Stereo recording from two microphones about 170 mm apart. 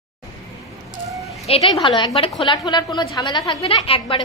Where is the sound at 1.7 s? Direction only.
30° left (ahead or behind).